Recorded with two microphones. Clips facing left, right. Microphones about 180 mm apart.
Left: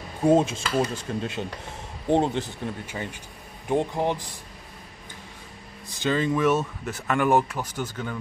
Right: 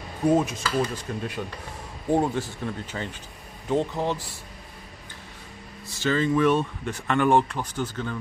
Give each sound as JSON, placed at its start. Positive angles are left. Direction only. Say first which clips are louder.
{"t": 0.2, "sound": "speech", "louder": "left 2 dB", "side_deg": 25}
{"t": 5.9, "sound": "speech", "louder": "right 1 dB", "side_deg": 15}